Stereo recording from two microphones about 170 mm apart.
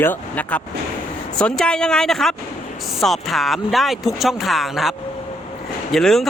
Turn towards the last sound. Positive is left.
turn(degrees=0)  # may be behind; listen again after turning